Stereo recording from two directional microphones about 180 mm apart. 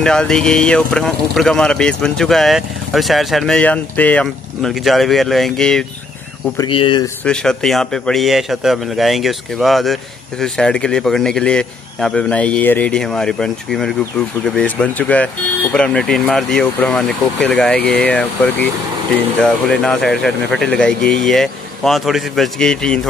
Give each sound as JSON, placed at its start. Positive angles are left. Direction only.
{"t": 0.0, "sound": "speech", "side_deg": 5}
{"t": 6.6, "sound": "speech", "side_deg": 30}
{"t": 7.2, "sound": "speech", "side_deg": 5}